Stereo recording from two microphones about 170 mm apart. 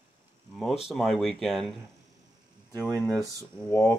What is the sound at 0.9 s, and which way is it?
Speech, centre (ahead or behind).